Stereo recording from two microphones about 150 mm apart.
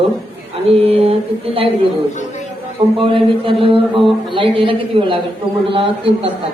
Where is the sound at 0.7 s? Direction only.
40° right (ahead or behind).